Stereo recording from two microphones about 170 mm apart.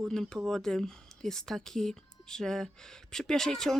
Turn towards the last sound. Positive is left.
turn(degrees=0)  # may be behind; listen again after turning